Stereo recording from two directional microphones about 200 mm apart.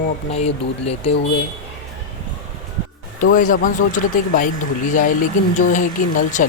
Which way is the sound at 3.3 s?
40° left (ahead or behind).